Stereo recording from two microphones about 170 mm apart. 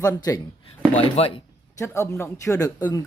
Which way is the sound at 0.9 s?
35° left (ahead or behind).